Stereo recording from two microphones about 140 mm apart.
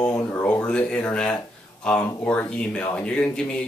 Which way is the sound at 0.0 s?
15° left (ahead or behind).